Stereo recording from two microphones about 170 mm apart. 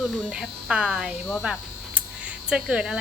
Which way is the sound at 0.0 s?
5° right (ahead or behind).